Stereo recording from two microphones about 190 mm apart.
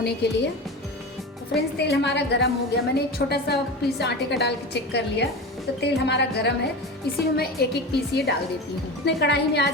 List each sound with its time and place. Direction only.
0.0 s a woman's voice: 60° left (ahead or behind)
1.5 s a woman's voice: 60° left (ahead or behind)